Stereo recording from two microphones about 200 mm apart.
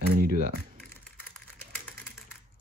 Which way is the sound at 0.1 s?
45° right (ahead or behind).